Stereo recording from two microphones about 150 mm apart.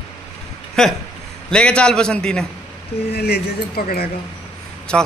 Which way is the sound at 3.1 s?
90° left.